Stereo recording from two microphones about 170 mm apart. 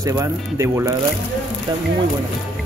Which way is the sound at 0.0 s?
15° right (ahead or behind).